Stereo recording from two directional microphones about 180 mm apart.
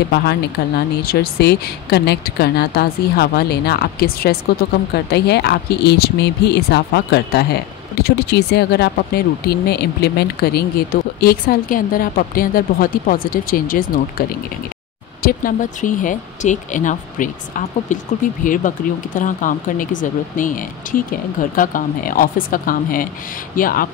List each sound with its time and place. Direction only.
0.1 s speech: 65° left (ahead or behind)
15.2 s speech: 50° left (ahead or behind)